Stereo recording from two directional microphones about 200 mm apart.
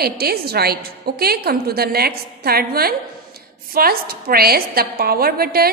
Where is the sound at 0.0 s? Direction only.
50° right (ahead or behind).